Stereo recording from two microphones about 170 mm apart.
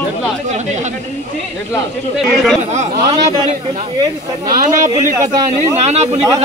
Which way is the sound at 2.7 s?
40° right (ahead or behind).